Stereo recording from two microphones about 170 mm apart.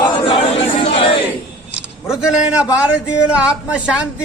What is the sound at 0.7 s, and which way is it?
Speech, 35° left (ahead or behind).